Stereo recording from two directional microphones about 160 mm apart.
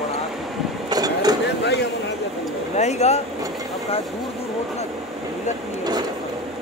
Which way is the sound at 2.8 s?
45° left (ahead or behind).